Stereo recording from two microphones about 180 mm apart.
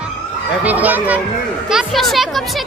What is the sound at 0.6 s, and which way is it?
A child's voice, 10° right (ahead or behind).